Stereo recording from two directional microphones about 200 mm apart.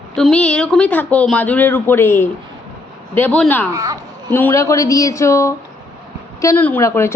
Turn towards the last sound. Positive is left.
turn(degrees=15)  # may be behind; listen again after turning